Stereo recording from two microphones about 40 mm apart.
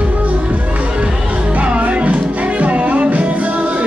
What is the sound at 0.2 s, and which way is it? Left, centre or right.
Music, right.